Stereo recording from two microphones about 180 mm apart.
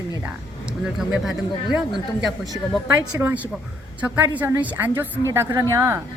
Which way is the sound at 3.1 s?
10° right (ahead or behind).